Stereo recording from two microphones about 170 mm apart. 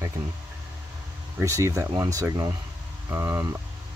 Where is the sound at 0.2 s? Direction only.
25° right (ahead or behind).